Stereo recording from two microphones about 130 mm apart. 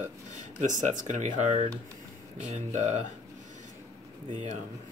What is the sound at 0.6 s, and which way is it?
Speech, 75° right (ahead or behind).